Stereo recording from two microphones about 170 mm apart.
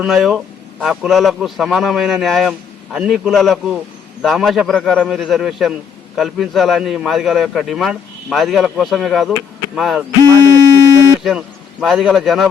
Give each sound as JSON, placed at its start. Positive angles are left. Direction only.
{"t": 0.0, "sound": "a man's voice", "side_deg": 0}
{"t": 10.2, "sound": "a sound", "side_deg": -20}
{"t": 11.2, "sound": "a man's voice", "side_deg": 0}